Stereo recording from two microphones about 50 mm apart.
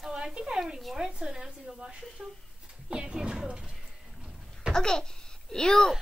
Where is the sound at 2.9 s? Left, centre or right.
Centre.